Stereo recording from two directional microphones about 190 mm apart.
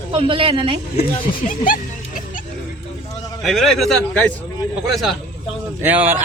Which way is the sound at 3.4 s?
Centre (ahead or behind).